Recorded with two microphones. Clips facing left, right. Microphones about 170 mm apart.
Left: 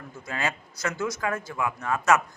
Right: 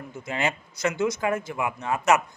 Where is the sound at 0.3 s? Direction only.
20° right (ahead or behind).